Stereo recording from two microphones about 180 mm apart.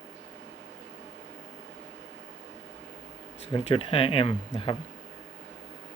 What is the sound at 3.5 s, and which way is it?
Speech, 30° left (ahead or behind).